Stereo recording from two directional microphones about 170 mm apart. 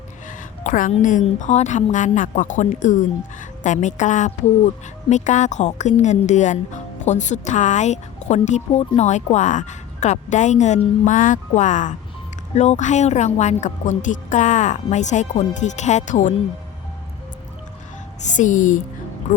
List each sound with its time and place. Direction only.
0.3 s music: 50° left (ahead or behind)
1.2 s speech: 45° left (ahead or behind)
18.3 s speech: 50° left (ahead or behind)